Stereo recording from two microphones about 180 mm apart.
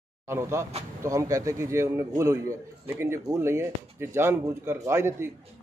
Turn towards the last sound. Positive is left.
turn(degrees=-15)  # may be behind; listen again after turning